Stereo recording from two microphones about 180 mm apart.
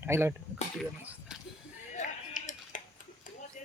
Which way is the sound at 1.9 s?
45° left (ahead or behind).